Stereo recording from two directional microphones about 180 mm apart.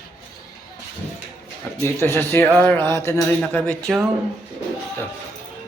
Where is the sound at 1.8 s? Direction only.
15° left (ahead or behind).